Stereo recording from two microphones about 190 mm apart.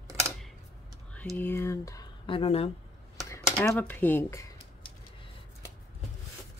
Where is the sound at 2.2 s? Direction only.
30° left (ahead or behind).